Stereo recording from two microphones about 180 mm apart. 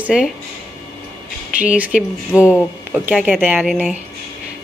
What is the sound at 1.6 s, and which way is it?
A woman's voice, 10° right (ahead or behind).